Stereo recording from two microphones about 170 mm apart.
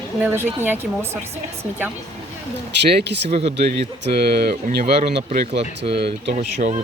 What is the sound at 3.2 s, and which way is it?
Speech, 35° right (ahead or behind).